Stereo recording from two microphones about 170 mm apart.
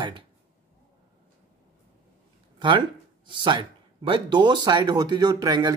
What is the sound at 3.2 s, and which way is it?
Speech, 30° right (ahead or behind).